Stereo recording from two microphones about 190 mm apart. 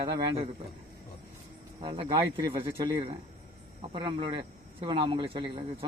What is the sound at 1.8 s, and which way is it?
Speech, 25° right (ahead or behind).